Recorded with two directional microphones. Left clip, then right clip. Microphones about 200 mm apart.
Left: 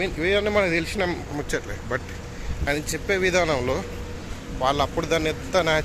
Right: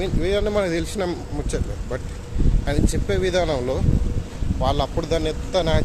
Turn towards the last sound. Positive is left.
turn(degrees=-15)  # may be behind; listen again after turning